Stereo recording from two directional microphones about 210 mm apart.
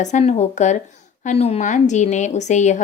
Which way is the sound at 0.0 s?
30° left (ahead or behind).